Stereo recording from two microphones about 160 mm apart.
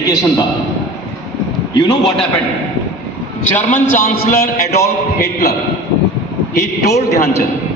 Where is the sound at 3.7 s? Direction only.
60° left (ahead or behind); by 7.3 s 90° left.